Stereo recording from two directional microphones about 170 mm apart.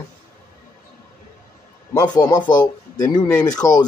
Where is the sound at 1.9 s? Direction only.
25° left (ahead or behind).